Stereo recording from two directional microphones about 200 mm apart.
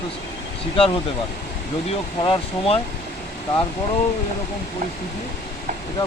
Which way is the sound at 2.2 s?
25° left (ahead or behind).